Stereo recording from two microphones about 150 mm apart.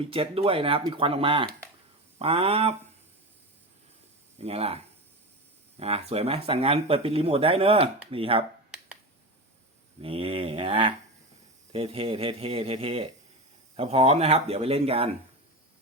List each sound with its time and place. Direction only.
0.1 s speech: 40° right (ahead or behind)
4.4 s speech: 40° right (ahead or behind)
10.0 s speech: 40° right (ahead or behind)